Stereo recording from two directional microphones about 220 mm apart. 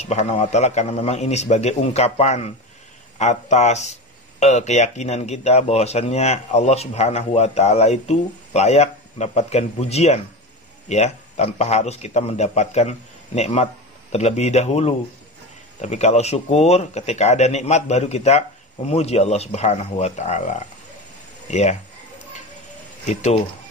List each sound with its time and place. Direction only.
0.0 s speech: 30° left (ahead or behind)
23.0 s speech: 30° left (ahead or behind)